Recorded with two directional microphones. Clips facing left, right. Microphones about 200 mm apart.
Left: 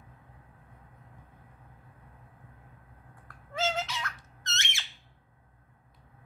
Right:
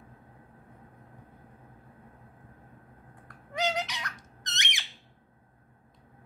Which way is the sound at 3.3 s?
15° right (ahead or behind).